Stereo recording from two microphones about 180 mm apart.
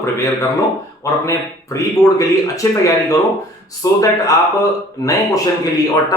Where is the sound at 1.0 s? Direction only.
15° left (ahead or behind).